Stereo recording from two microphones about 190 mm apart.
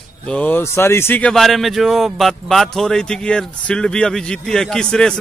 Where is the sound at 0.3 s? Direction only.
10° left (ahead or behind).